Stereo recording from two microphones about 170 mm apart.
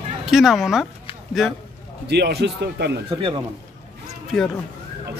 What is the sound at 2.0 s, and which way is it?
Speech, 75° right (ahead or behind).